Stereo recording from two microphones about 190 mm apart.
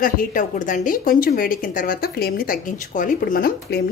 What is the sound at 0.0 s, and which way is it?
A woman's voice, 45° left (ahead or behind).